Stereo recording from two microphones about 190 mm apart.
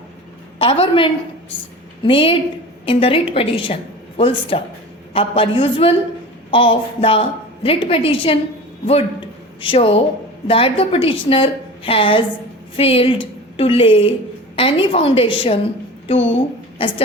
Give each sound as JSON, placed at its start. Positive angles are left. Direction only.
{"t": 0.6, "sound": "a woman's voice", "side_deg": 30}
{"t": 9.6, "sound": "a woman's voice", "side_deg": 30}